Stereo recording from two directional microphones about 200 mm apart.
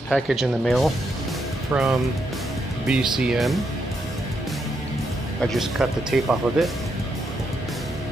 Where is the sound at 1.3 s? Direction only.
Centre (ahead or behind).